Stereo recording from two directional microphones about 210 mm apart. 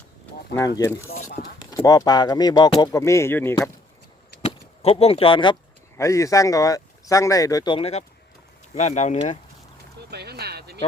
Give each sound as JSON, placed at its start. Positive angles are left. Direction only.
{"t": 1.1, "sound": "speech", "side_deg": 45}
{"t": 1.7, "sound": "speech", "side_deg": 15}
{"t": 4.4, "sound": "speech", "side_deg": 30}
{"t": 10.1, "sound": "a sound", "side_deg": -50}